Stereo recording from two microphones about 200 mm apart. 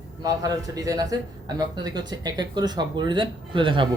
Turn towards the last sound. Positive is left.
turn(degrees=-25)  # may be behind; listen again after turning